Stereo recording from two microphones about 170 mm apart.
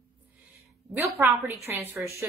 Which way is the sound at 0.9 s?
15° right (ahead or behind).